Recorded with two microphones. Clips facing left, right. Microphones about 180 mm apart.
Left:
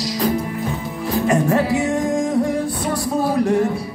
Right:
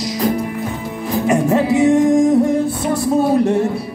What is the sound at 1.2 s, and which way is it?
Music, 20° right (ahead or behind).